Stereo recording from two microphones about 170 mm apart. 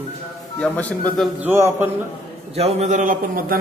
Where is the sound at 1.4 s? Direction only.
15° right (ahead or behind).